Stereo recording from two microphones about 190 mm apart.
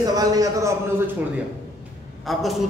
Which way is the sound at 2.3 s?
Centre (ahead or behind).